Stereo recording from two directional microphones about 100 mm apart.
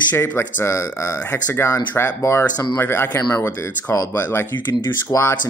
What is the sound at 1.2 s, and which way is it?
Speech, 15° left (ahead or behind).